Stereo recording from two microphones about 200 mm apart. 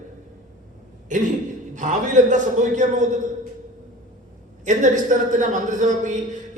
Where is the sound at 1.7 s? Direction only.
40° right (ahead or behind).